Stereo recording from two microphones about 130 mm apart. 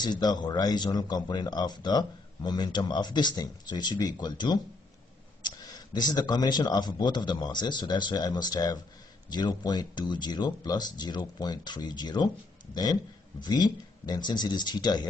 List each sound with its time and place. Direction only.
0.0 s speech: 35° left (ahead or behind)
13.4 s speech: 35° left (ahead or behind)